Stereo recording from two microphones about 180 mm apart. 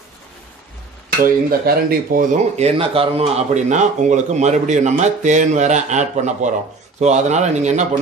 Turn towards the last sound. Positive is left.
turn(degrees=-40)  # may be behind; listen again after turning